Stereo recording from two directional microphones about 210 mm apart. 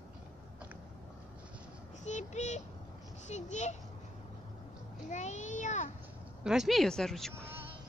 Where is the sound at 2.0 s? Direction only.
35° left (ahead or behind).